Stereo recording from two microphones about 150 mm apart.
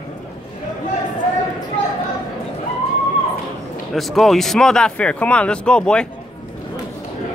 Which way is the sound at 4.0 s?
Centre (ahead or behind).